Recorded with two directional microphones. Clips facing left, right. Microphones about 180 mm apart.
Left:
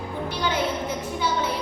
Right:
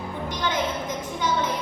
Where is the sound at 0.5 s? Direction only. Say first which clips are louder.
Left 1 dB; 10° left (ahead or behind).